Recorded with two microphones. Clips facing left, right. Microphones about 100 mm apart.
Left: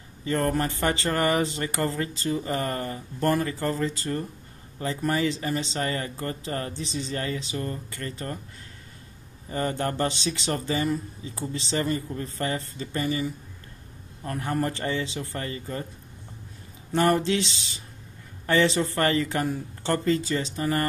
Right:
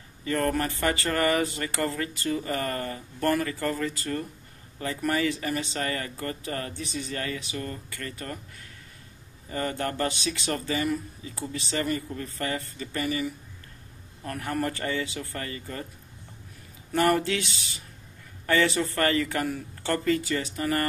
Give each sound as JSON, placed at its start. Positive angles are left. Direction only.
{"t": 0.2, "sound": "speech", "side_deg": 25}
{"t": 9.5, "sound": "speech", "side_deg": 30}
{"t": 16.9, "sound": "speech", "side_deg": 25}